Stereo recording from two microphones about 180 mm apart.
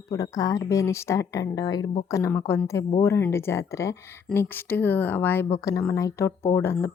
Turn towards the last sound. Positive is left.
turn(degrees=15)  # may be behind; listen again after turning